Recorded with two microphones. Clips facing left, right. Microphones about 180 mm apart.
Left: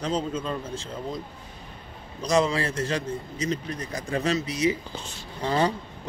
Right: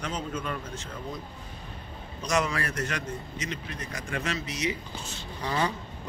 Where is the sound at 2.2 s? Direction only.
30° left (ahead or behind).